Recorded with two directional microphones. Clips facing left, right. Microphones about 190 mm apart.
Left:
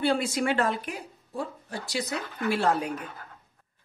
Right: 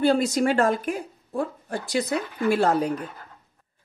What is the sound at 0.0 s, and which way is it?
A woman's voice, 40° right (ahead or behind).